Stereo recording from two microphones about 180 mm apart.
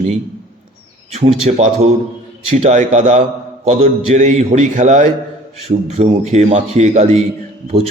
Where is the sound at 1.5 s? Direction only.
40° right (ahead or behind).